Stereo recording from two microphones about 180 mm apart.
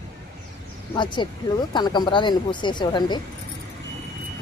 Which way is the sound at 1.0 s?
25° left (ahead or behind).